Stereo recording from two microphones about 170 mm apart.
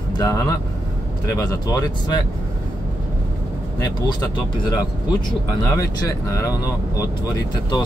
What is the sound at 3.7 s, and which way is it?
Speech, 25° left (ahead or behind).